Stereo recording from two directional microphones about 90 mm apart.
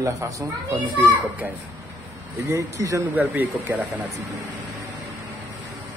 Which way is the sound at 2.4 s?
35° right (ahead or behind).